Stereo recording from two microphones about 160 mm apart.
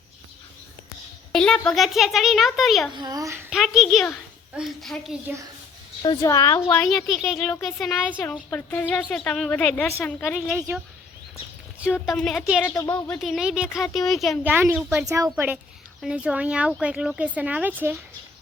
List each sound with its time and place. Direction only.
1.3 s a child's voice: 5° left (ahead or behind)
2.9 s a child's voice: 25° right (ahead or behind)
3.5 s a sound: centre (ahead or behind)
4.5 s a child's voice: centre (ahead or behind)
6.2 s a woman's voice: 20° left (ahead or behind)
6.9 s a child's voice: centre (ahead or behind)
11.9 s a child's voice: 5° left (ahead or behind)
12.8 s speech: 25° left (ahead or behind)
13.1 s a child's voice: centre (ahead or behind)
14.4 s speech: 10° right (ahead or behind)
16.0 s speech: 5° right (ahead or behind)